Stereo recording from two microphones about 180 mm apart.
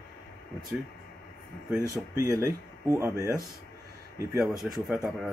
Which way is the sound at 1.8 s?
15° right (ahead or behind).